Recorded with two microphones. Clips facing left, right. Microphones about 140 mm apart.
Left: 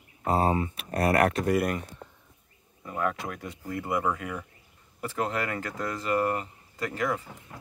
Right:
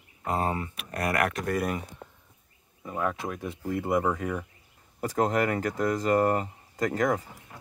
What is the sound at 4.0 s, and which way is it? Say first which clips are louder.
Speech: right 2 dB; 35° right (ahead or behind).